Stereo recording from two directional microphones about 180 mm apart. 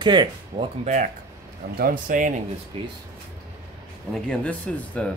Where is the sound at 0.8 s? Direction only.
40° right (ahead or behind).